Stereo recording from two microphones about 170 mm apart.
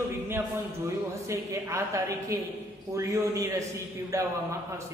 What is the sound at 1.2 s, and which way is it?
A man's voice, 20° right (ahead or behind).